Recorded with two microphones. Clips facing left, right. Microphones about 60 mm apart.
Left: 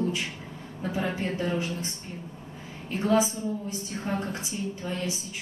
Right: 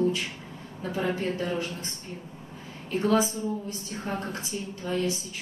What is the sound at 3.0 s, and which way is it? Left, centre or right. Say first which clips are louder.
A woman's voice: even; centre.